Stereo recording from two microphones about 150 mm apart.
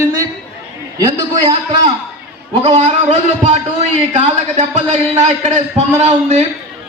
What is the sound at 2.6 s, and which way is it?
A man's voice, 45° right (ahead or behind).